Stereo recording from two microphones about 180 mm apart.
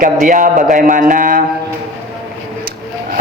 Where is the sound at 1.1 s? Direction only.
50° right (ahead or behind).